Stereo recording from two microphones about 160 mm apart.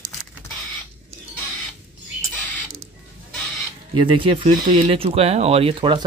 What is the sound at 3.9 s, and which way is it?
Speech, 30° right (ahead or behind).